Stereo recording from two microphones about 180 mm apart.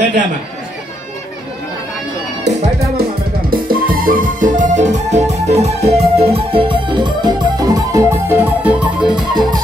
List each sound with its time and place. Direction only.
3.0 s music: 55° right (ahead or behind); by 9.2 s 5° right (ahead or behind)
9.3 s music: 25° right (ahead or behind)